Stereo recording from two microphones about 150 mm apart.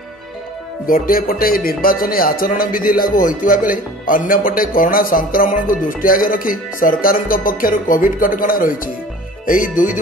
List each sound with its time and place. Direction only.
0.8 s speech: 70° left (ahead or behind)